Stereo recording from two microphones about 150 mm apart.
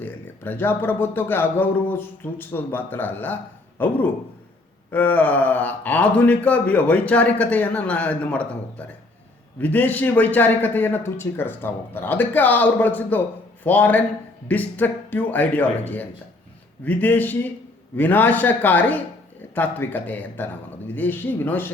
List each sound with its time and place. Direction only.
0.0 s a man's voice: 15° left (ahead or behind)
9.6 s a man's voice: 10° left (ahead or behind)